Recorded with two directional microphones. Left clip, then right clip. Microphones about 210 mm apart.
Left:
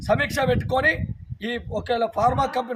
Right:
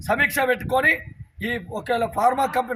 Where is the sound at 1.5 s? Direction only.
Centre (ahead or behind).